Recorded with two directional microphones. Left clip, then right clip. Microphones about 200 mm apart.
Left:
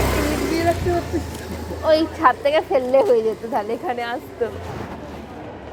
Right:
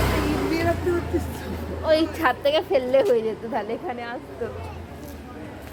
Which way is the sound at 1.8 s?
15° left (ahead or behind).